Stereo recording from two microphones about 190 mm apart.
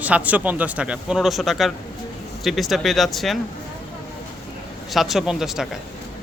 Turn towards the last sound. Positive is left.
turn(degrees=-5)  # may be behind; listen again after turning